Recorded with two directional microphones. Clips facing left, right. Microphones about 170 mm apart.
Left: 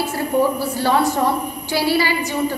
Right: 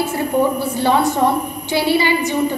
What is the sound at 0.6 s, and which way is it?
A woman's voice, 20° right (ahead or behind).